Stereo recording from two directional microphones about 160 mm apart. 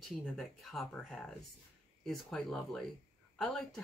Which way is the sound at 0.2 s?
Centre (ahead or behind).